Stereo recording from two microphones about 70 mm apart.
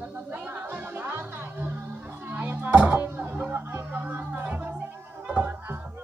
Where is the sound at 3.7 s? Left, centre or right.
Right.